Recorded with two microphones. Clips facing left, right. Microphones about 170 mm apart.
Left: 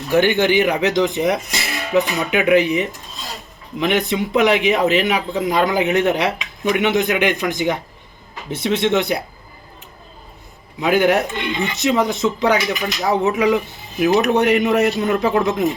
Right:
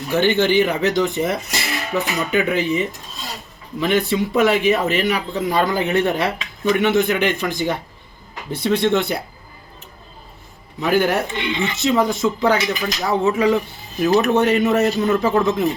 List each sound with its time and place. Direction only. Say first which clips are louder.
0.1 s speech: left 1 dB; 15° left (ahead or behind)
10.8 s speech: left 2 dB; 15° left (ahead or behind)
11.3 s speech: even; 50° left (ahead or behind)
11.7 s speech: even; 20° left (ahead or behind)